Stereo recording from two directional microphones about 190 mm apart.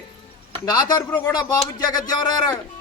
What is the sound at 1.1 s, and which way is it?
Speech, 5° left (ahead or behind).